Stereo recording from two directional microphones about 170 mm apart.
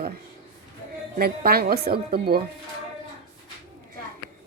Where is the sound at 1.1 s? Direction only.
60° right (ahead or behind).